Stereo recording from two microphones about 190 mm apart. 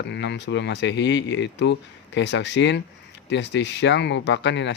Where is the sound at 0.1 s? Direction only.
65° left (ahead or behind).